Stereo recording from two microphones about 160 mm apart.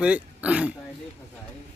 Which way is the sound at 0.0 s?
10° right (ahead or behind).